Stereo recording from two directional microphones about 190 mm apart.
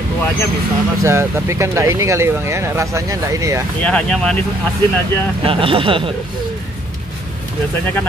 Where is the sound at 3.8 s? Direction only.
5° left (ahead or behind).